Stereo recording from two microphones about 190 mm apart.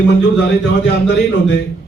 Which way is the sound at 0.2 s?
65° left (ahead or behind).